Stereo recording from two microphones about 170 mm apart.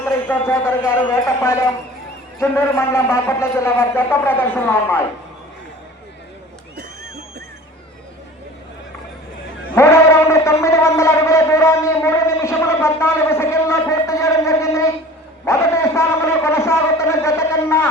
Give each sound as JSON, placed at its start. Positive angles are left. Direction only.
{"t": 0.0, "sound": "a man's voice", "side_deg": 10}
{"t": 9.7, "sound": "a man's voice", "side_deg": 15}
{"t": 15.4, "sound": "a sound", "side_deg": 15}